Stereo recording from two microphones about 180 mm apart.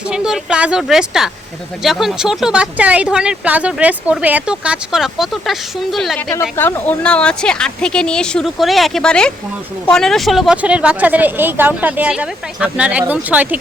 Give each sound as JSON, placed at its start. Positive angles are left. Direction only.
{"t": 0.1, "sound": "speech", "side_deg": -5}